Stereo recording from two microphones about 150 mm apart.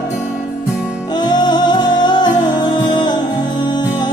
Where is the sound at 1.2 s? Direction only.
30° left (ahead or behind).